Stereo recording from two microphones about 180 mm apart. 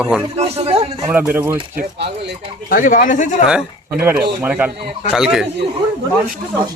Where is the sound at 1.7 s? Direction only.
70° right (ahead or behind).